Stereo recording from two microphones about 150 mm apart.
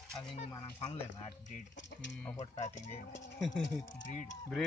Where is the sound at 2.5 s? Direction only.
50° left (ahead or behind).